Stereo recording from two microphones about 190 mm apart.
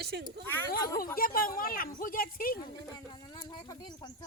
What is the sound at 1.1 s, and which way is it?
Speech, 50° left (ahead or behind).